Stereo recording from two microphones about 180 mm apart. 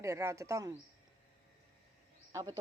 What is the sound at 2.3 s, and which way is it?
Speech, 20° right (ahead or behind).